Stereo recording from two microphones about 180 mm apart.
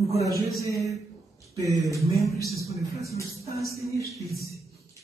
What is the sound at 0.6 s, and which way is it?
Music, 15° right (ahead or behind).